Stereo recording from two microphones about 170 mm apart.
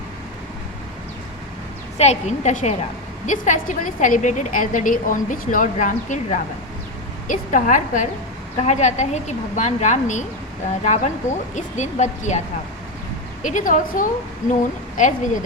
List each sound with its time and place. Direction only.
2.0 s a woman's voice: 40° left (ahead or behind)
13.4 s a woman's voice: 50° left (ahead or behind)